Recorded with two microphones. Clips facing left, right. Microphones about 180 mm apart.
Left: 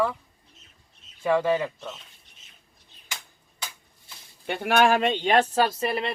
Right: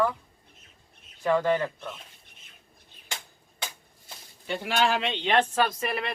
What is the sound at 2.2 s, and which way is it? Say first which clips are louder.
Cutlery: right 2 dB; 55° right (ahead or behind).